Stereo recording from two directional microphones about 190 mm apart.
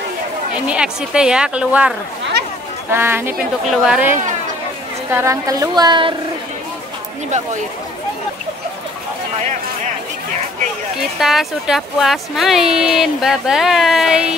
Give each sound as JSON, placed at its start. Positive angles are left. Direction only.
{"t": 0.7, "sound": "a woman's voice", "side_deg": -5}
{"t": 7.2, "sound": "speech", "side_deg": -40}
{"t": 11.0, "sound": "speech", "side_deg": 0}